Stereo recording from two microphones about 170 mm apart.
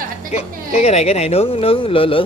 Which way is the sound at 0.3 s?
40° left (ahead or behind).